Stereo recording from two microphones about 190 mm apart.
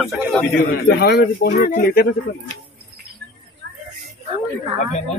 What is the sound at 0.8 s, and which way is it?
Speech, 60° left (ahead or behind).